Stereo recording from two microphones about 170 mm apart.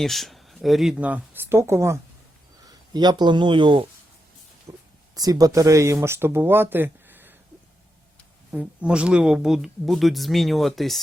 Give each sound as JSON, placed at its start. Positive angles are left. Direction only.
{"t": 0.0, "sound": "speech", "side_deg": 0}
{"t": 4.7, "sound": "a sound", "side_deg": -15}
{"t": 5.1, "sound": "speech", "side_deg": -20}
{"t": 8.5, "sound": "speech", "side_deg": -5}